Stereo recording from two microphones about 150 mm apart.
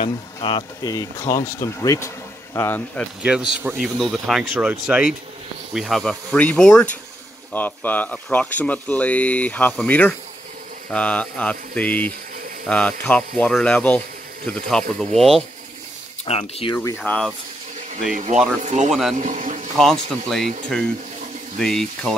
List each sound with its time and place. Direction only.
0.0 s speech: 30° left (ahead or behind); by 3.1 s 15° left (ahead or behind)
3.2 s a man's voice: 5° right (ahead or behind)
16.3 s speech: 40° left (ahead or behind)
16.7 s speech: 15° left (ahead or behind)
18.1 s speech: 50° right (ahead or behind)
18.9 s speech: centre (ahead or behind)
19.1 s a man's voice: 55° right (ahead or behind)
19.8 s speech: centre (ahead or behind)